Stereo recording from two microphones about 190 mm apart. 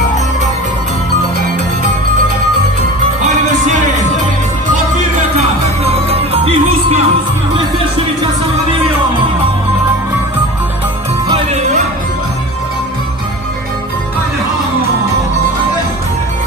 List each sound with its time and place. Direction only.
5.9 s music: 30° right (ahead or behind)
11.2 s music: 30° right (ahead or behind)